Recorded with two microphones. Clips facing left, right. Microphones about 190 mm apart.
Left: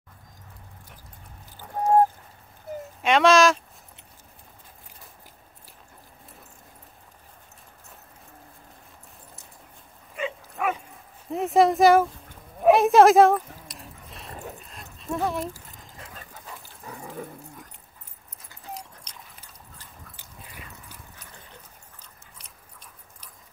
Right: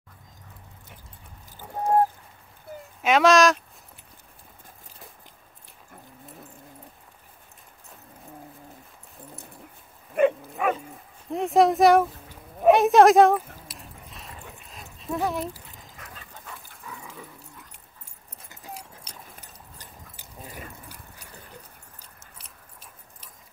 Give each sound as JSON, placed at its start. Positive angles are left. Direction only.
{"t": 3.0, "sound": "speech", "side_deg": 0}
{"t": 10.2, "sound": "dog", "side_deg": -60}
{"t": 10.6, "sound": "bow-wow", "side_deg": 0}
{"t": 11.2, "sound": "speech", "side_deg": 0}
{"t": 12.6, "sound": "a sound", "side_deg": 0}
{"t": 14.3, "sound": "dog", "side_deg": 40}
{"t": 14.7, "sound": "dog", "side_deg": 0}
{"t": 16.0, "sound": "dog", "side_deg": 25}
{"t": 16.8, "sound": "dog", "side_deg": 40}
{"t": 18.5, "sound": "dog", "side_deg": -15}
{"t": 20.4, "sound": "a sound", "side_deg": -45}